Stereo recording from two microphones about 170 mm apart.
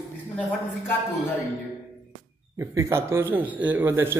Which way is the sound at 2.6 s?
15° right (ahead or behind).